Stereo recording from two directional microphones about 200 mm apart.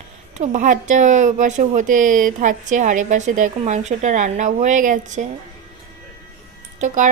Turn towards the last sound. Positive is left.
turn(degrees=-35)  # may be behind; listen again after turning